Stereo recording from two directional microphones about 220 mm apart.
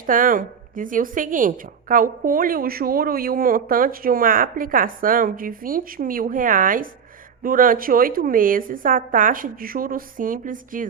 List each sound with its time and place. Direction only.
0.0 s a woman's voice: 40° right (ahead or behind)